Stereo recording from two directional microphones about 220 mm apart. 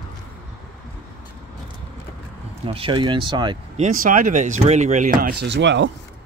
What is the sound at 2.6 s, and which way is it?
Speech, 25° right (ahead or behind).